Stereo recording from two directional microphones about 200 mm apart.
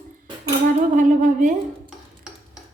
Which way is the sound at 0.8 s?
40° right (ahead or behind).